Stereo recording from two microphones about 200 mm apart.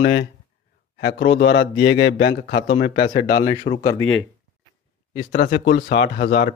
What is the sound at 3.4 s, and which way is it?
Speech, 20° left (ahead or behind).